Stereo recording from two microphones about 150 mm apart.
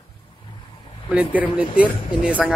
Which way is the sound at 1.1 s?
10° right (ahead or behind).